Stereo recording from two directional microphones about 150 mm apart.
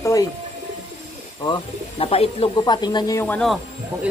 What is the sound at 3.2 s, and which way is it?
Speech, 10° left (ahead or behind).